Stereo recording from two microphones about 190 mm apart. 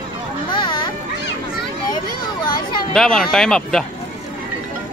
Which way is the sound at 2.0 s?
50° left (ahead or behind).